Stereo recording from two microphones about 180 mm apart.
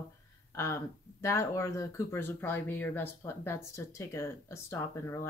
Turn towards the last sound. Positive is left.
turn(degrees=15)  # may be behind; listen again after turning